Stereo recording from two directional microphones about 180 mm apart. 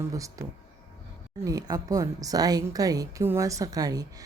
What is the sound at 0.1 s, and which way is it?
Speech, 20° right (ahead or behind).